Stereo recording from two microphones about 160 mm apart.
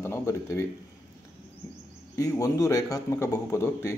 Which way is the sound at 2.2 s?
20° left (ahead or behind).